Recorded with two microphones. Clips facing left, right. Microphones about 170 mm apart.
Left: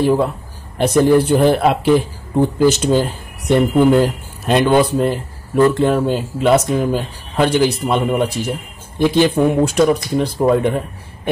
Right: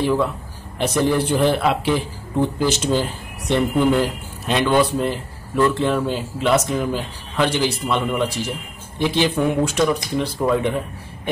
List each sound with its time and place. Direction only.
0.0 s speech: 40° left (ahead or behind)